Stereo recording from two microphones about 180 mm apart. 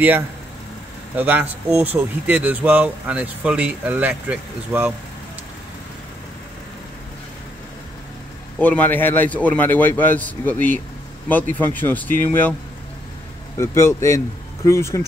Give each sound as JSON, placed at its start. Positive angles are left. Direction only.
{"t": 1.1, "sound": "speech", "side_deg": -10}
{"t": 8.5, "sound": "a man's voice", "side_deg": 10}
{"t": 13.6, "sound": "a man's voice", "side_deg": 15}